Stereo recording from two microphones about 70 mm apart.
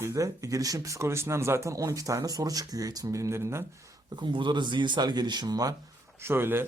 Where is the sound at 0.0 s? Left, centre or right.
Right.